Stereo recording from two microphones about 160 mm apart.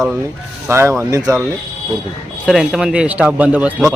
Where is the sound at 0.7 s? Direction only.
15° right (ahead or behind).